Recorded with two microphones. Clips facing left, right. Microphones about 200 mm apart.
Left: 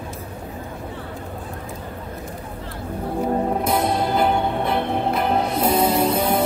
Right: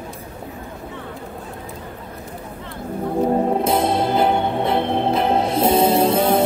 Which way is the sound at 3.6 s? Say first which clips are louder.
Right 2 dB; 25° right (ahead or behind).